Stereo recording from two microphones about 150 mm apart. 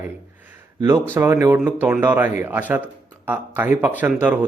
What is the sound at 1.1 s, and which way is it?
Speech, 15° right (ahead or behind).